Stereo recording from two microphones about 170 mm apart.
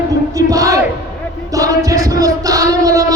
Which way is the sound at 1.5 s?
20° right (ahead or behind).